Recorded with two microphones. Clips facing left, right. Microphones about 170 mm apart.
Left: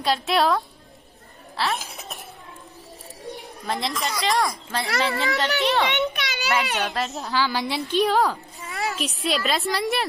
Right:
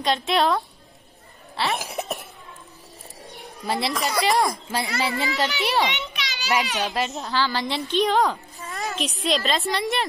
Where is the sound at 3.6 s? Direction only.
5° right (ahead or behind).